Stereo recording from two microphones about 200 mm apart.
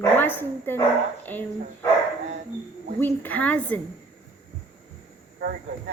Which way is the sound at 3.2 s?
5° left (ahead or behind).